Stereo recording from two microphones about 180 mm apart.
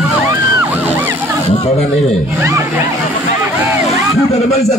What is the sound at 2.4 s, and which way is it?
Speech, 15° right (ahead or behind).